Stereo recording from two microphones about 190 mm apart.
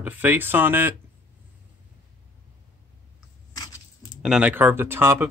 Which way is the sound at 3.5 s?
20° left (ahead or behind).